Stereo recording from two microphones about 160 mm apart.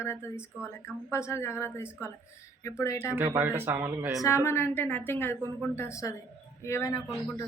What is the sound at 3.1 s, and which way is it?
Speech, 15° right (ahead or behind).